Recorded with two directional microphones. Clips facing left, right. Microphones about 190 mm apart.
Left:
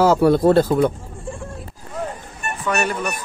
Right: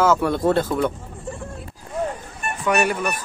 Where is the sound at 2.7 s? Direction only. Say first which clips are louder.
Right 2 dB; 10° right (ahead or behind).